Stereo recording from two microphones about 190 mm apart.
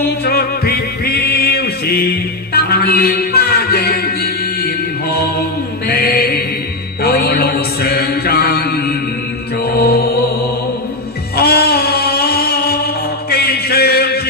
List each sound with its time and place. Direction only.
0.3 s music: 55° left (ahead or behind)
7.0 s mantra: 55° left (ahead or behind)
11.3 s music: 55° left (ahead or behind)
13.3 s a sound: 55° left (ahead or behind)